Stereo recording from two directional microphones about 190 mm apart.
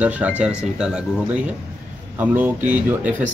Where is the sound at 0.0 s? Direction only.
5° right (ahead or behind).